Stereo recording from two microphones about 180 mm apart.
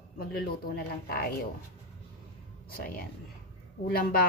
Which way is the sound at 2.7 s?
55° left (ahead or behind).